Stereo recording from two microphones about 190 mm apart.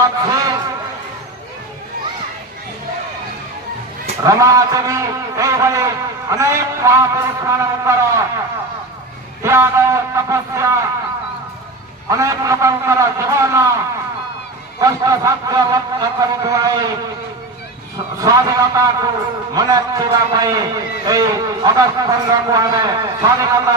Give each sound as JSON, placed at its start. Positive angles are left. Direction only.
{"t": 0.0, "sound": "a sound", "side_deg": -20}
{"t": 4.2, "sound": "vehicle", "side_deg": -15}
{"t": 9.4, "sound": "vehicle", "side_deg": -15}
{"t": 12.0, "sound": "vehicle", "side_deg": -15}
{"t": 14.8, "sound": "a man's voice", "side_deg": -20}
{"t": 17.9, "sound": "a man's voice", "side_deg": -20}